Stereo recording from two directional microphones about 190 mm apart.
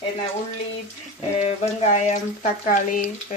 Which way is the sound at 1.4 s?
35° left (ahead or behind).